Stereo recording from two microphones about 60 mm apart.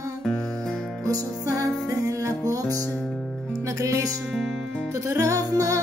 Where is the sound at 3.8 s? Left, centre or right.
Right.